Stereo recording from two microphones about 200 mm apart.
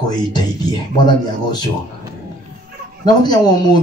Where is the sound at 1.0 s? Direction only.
20° left (ahead or behind).